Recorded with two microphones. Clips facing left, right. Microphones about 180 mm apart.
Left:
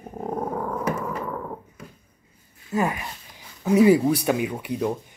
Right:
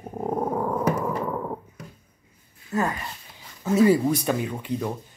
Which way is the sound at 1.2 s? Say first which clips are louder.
Right 3 dB; 15° right (ahead or behind).